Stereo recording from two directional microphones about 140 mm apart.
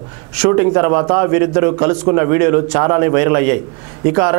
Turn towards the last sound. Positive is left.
turn(degrees=-20)  # may be behind; listen again after turning